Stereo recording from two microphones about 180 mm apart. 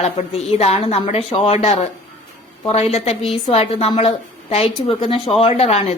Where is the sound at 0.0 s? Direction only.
35° left (ahead or behind).